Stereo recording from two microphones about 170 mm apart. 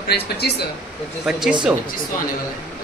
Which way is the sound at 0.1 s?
70° left (ahead or behind).